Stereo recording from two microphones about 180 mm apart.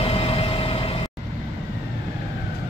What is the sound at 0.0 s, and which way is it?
Vehicle, 35° left (ahead or behind).